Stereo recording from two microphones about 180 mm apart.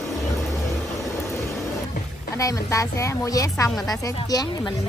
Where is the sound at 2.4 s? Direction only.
20° left (ahead or behind).